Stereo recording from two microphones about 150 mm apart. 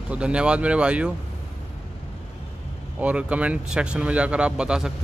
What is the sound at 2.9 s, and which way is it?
Speech, 10° right (ahead or behind).